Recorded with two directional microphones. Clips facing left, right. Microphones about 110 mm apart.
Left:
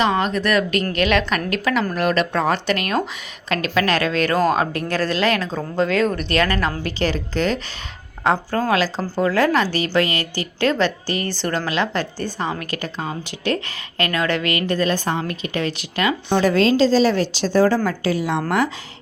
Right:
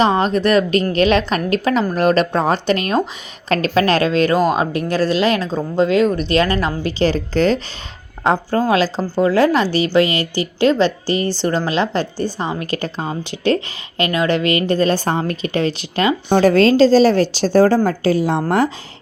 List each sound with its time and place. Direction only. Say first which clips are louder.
0.0 s a woman's voice: right 4 dB; 30° right (ahead or behind)
8.2 s a woman's voice: right 3 dB; 25° right (ahead or behind)
16.4 s a woman's voice: right 5 dB; 45° right (ahead or behind)